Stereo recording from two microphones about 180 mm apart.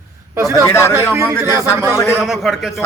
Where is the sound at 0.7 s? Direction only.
15° left (ahead or behind).